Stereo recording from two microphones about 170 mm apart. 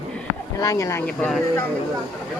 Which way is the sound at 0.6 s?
20° left (ahead or behind).